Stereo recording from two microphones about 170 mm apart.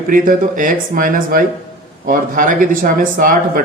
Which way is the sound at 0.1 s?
55° right (ahead or behind).